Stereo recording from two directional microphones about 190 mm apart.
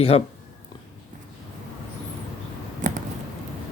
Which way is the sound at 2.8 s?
45° right (ahead or behind).